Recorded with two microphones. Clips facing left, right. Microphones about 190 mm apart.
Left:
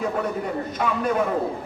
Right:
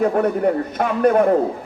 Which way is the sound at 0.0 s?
60° right (ahead or behind).